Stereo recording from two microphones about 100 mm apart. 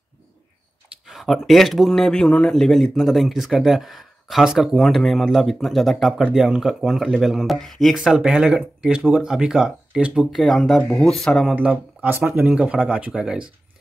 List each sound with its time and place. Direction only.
1.0 s speech: centre (ahead or behind)
11.5 s speech: 15° right (ahead or behind)
12.4 s speech: 10° right (ahead or behind)